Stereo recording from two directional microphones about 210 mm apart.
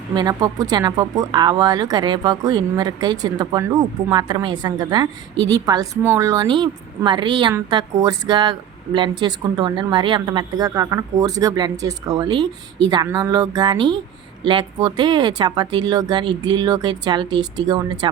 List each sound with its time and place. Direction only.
0.1 s speech: 20° right (ahead or behind)